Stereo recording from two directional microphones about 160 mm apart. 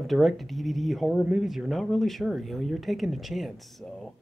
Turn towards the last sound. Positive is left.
turn(degrees=0)  # may be behind; listen again after turning